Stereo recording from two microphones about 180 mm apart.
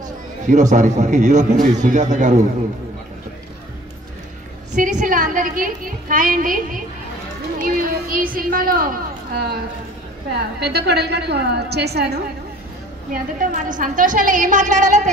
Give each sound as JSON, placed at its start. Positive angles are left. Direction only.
{"t": 0.5, "sound": "a woman's voice", "side_deg": -45}
{"t": 4.7, "sound": "a woman's voice", "side_deg": -45}
{"t": 10.6, "sound": "a woman's voice", "side_deg": -65}
{"t": 13.1, "sound": "a woman's voice", "side_deg": -50}